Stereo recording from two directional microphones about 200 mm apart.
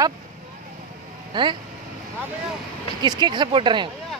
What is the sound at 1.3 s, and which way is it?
Speech, 20° right (ahead or behind).